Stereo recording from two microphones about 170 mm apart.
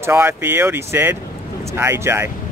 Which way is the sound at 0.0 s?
15° right (ahead or behind).